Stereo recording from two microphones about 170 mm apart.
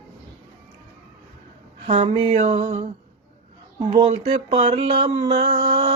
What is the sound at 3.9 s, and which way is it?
Mantra, 40° right (ahead or behind).